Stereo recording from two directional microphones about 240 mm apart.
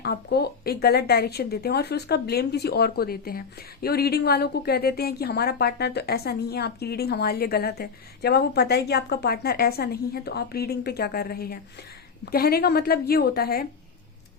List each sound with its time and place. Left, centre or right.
0.0 s a woman's voice: left